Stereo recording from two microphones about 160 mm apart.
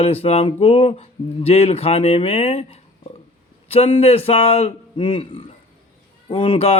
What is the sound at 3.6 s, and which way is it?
A man's voice, 35° left (ahead or behind).